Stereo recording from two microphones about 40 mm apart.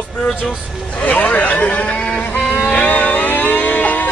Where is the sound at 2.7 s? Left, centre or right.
Left.